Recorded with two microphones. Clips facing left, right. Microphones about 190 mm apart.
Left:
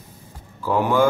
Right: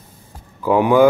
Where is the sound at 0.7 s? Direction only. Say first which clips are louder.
Right 6 dB; 15° right (ahead or behind).